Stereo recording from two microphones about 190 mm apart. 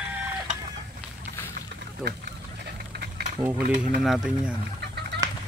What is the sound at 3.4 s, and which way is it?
Speech, centre (ahead or behind).